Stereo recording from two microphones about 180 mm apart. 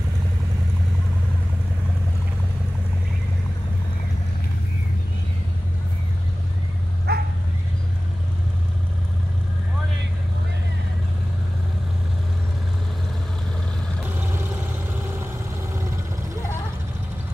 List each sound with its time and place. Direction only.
7.1 s bow-wow: 65° right (ahead or behind)
14.0 s vehicle: 10° right (ahead or behind)